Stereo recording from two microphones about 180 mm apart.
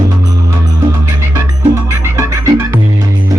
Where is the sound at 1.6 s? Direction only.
15° right (ahead or behind).